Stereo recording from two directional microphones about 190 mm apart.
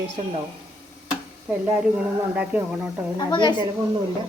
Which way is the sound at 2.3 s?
5° right (ahead or behind).